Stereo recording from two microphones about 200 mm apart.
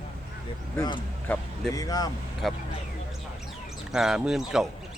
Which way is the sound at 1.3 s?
10° left (ahead or behind).